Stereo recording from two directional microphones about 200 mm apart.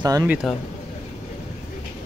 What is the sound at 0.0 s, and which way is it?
Speech, 15° right (ahead or behind).